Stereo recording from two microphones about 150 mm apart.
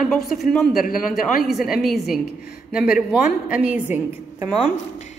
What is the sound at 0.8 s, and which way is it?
Speech, 70° left (ahead or behind).